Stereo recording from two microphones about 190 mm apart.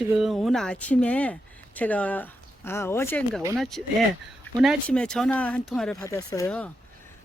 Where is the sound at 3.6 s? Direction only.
Centre (ahead or behind).